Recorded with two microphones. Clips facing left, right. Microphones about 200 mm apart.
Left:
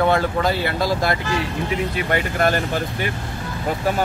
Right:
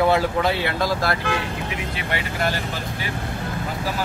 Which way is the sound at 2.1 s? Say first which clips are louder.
Left 5 dB; 50° left (ahead or behind).